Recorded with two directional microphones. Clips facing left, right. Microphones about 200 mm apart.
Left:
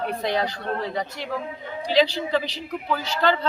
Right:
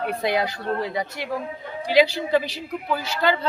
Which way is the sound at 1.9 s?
10° right (ahead or behind).